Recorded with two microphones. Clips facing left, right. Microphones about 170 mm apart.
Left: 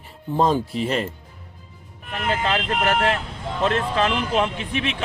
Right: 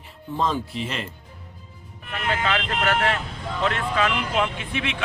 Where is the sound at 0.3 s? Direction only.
40° left (ahead or behind).